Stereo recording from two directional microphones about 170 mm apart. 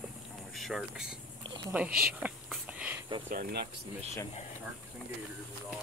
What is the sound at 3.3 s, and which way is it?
Speech, 60° right (ahead or behind).